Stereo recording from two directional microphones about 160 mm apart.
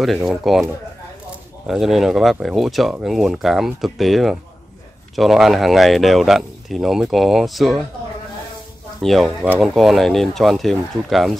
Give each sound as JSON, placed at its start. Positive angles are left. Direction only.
{"t": 0.0, "sound": "speech", "side_deg": 0}
{"t": 1.7, "sound": "speech", "side_deg": 0}
{"t": 9.0, "sound": "speech", "side_deg": 0}